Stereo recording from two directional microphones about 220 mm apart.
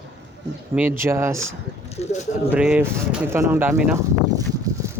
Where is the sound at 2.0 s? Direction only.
30° left (ahead or behind).